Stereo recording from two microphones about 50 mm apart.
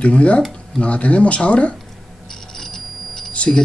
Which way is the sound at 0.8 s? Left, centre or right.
Left.